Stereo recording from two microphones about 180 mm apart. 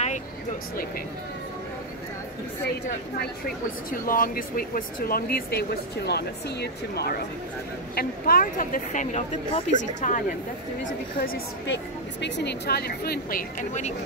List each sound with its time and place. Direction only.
4.0 s speech: 50° left (ahead or behind)
10.9 s speech: 55° left (ahead or behind)
11.6 s speech: 80° left; by 13.9 s 45° left (ahead or behind)